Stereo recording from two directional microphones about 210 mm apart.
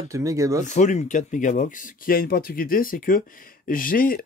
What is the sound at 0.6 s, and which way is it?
Speech, 35° left (ahead or behind).